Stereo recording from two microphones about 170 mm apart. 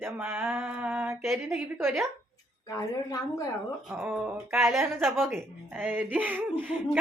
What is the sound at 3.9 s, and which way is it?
Speech, 5° right (ahead or behind).